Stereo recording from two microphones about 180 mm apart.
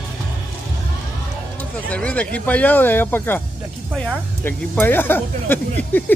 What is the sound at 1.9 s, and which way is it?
A man's voice, 5° left (ahead or behind).